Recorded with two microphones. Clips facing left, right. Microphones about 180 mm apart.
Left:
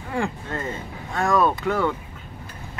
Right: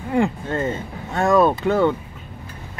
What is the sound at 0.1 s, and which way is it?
Speech, 25° right (ahead or behind).